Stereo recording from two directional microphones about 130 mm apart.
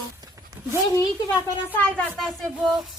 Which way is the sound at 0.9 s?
25° left (ahead or behind).